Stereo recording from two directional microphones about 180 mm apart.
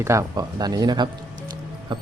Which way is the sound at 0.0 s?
15° right (ahead or behind).